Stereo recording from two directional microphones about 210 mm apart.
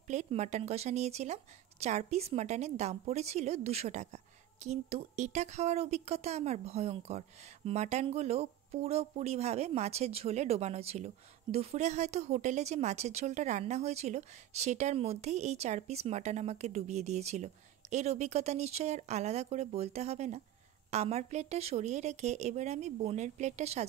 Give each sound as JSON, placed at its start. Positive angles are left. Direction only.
{"t": 0.1, "sound": "speech", "side_deg": -35}